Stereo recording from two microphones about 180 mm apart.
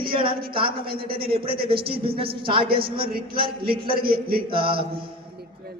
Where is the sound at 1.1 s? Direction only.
55° right (ahead or behind).